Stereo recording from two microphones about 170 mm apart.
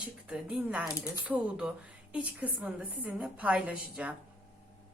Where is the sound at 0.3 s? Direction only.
5° right (ahead or behind).